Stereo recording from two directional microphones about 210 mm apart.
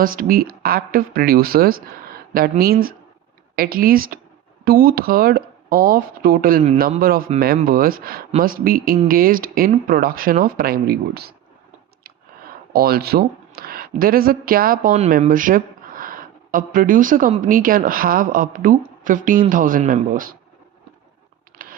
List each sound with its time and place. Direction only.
0.0 s speech: 40° right (ahead or behind)
12.7 s speech: 45° right (ahead or behind)
21.6 s a sound: 40° right (ahead or behind)